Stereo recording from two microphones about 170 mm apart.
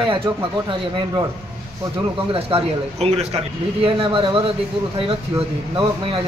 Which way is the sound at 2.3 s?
35° right (ahead or behind).